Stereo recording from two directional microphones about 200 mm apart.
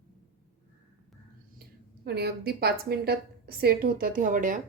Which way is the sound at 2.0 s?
55° right (ahead or behind).